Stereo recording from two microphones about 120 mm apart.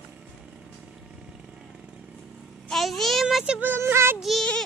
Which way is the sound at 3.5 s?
15° right (ahead or behind).